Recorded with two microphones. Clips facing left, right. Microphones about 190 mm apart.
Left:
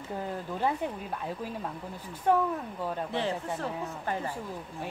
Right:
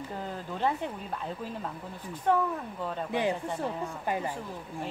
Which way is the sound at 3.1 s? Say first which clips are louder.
Right 2 dB; 15° right (ahead or behind).